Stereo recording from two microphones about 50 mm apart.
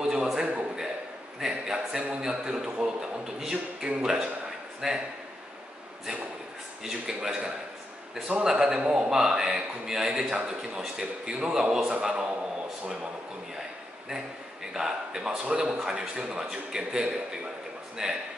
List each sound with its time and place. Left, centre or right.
0.0 s a sound: centre
1.4 s speech: centre
4.8 s a man's voice: centre
6.8 s a man's voice: centre
14.7 s speech: centre